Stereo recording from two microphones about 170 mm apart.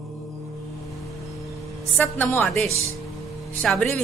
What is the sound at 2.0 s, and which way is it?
Speech, 10° left (ahead or behind).